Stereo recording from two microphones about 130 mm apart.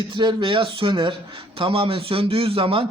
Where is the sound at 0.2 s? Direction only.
35° right (ahead or behind).